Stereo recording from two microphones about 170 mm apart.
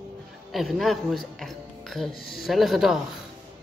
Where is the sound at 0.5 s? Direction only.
Centre (ahead or behind).